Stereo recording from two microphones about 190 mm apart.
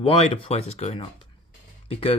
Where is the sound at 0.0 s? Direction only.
30° left (ahead or behind).